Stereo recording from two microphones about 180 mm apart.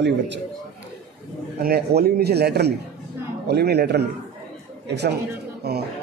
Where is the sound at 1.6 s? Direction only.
60° right (ahead or behind).